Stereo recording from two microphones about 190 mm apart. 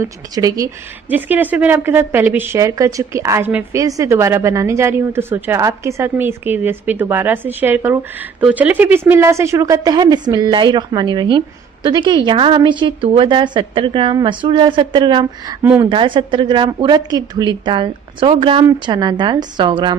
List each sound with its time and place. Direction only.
0.0 s a woman's voice: 20° right (ahead or behind)
1.1 s a woman's voice: 10° right (ahead or behind); by 20.0 s 25° right (ahead or behind)